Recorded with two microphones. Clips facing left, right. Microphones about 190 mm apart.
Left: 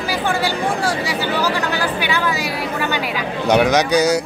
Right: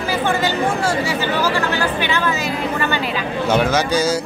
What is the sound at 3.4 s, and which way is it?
Speech, 15° left (ahead or behind).